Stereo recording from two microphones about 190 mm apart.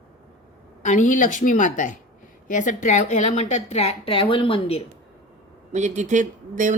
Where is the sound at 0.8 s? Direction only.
40° left (ahead or behind).